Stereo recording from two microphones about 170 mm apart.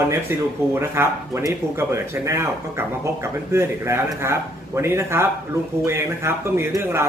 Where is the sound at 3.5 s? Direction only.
15° right (ahead or behind).